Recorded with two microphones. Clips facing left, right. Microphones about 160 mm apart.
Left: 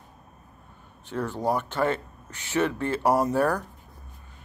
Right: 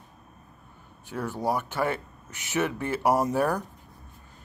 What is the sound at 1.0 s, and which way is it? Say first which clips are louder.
Speech: left 2 dB; 10° right (ahead or behind).